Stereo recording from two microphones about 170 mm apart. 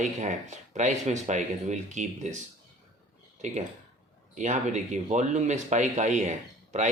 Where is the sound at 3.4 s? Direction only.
40° right (ahead or behind).